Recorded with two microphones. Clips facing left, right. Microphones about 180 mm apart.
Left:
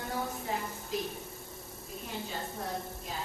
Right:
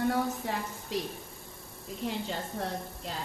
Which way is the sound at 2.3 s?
75° right (ahead or behind).